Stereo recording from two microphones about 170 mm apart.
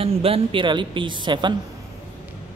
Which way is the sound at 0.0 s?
35° right (ahead or behind).